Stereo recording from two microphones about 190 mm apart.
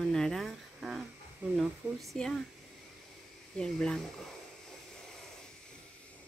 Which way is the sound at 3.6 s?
5° left (ahead or behind).